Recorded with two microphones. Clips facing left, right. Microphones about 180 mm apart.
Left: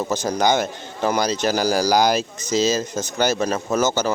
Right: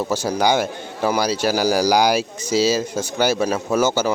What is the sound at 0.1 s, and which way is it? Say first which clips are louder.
A man's voice: even; 10° right (ahead or behind).